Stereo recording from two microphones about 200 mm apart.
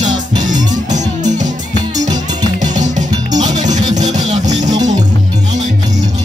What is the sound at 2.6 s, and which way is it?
Music, 35° right (ahead or behind).